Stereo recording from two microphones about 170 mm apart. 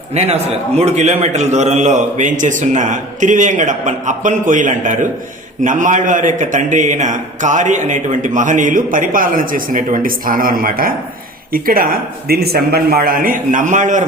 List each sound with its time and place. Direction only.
0.1 s a man's voice: 40° right (ahead or behind)